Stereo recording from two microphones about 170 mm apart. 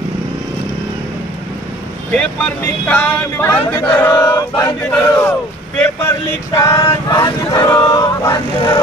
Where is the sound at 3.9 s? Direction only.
10° left (ahead or behind).